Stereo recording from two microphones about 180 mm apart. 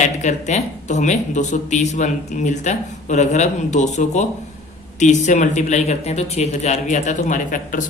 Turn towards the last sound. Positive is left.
turn(degrees=45)  # may be behind; listen again after turning